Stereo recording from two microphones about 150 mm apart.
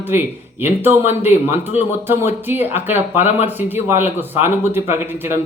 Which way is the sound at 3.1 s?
50° left (ahead or behind).